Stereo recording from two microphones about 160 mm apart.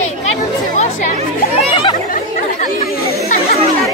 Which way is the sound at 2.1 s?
55° left (ahead or behind).